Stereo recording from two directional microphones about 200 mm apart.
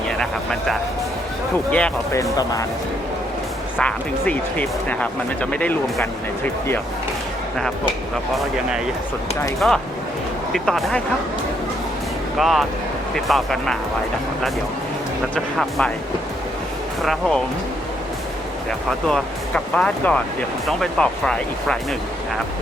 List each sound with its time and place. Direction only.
1.7 s speech: 5° left (ahead or behind)
2.4 s speech: 20° left (ahead or behind)
3.8 s speech: 5° left (ahead or behind)
9.6 s speech: centre (ahead or behind)
12.4 s speech: centre (ahead or behind)
17.0 s speech: centre (ahead or behind)
19.0 s speech: 5° left (ahead or behind)